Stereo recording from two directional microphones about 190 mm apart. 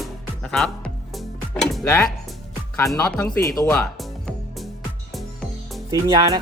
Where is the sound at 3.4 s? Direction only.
15° left (ahead or behind).